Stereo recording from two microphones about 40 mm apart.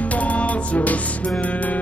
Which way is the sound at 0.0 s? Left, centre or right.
Left.